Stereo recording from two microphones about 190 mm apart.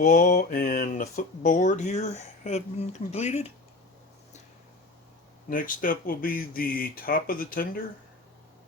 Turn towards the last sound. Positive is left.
turn(degrees=50)  # may be behind; listen again after turning